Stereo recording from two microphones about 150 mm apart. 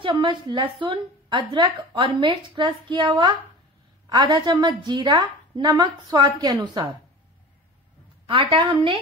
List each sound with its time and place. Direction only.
0.0 s a woman's voice: 35° right (ahead or behind)
8.3 s speech: 35° right (ahead or behind)